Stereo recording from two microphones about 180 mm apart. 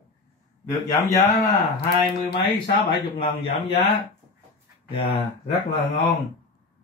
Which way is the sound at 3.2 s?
35° left (ahead or behind).